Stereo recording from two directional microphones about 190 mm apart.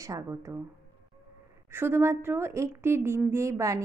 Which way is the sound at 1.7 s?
10° right (ahead or behind).